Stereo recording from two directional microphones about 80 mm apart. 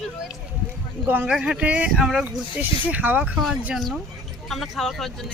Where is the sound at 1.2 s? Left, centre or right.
Centre.